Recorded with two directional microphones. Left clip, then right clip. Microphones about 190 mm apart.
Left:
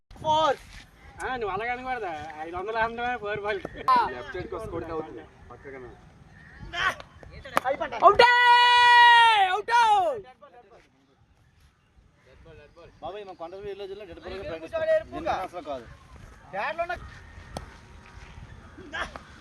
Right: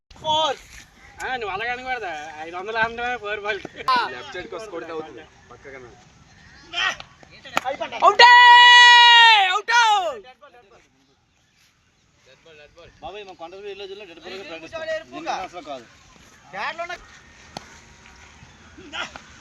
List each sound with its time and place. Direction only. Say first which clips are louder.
0.2 s a sound: right 2 dB; 10° right (ahead or behind)
1.2 s speech: right 3 dB; 65° left (ahead or behind)
6.7 s a sound: right 3 dB; 20° left (ahead or behind)
7.6 s speech: right 2 dB; 5° right (ahead or behind)
8.0 s speech: right 7 dB; 60° left (ahead or behind)
12.5 s speech: right 4 dB; 60° left (ahead or behind)
13.0 s speech: right 1 dB; 20° left (ahead or behind)
14.2 s speech: right 2 dB; 10° left (ahead or behind)
14.7 s speech: left 5 dB; 45° left (ahead or behind)
15.5 s speech: right 1 dB; 15° left (ahead or behind)
16.5 s speech: right 1 dB; 50° left (ahead or behind)
18.9 s speech: right 2 dB; 15° left (ahead or behind)